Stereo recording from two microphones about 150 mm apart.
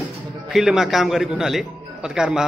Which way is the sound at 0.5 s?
Centre (ahead or behind).